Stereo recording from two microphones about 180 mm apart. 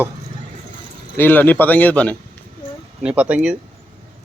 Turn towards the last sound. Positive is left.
turn(degrees=-5)  # may be behind; listen again after turning